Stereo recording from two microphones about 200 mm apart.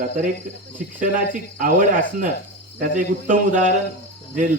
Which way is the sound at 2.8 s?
40° right (ahead or behind).